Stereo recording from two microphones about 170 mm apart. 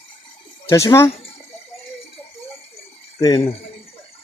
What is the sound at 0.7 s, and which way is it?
Speech, 15° left (ahead or behind).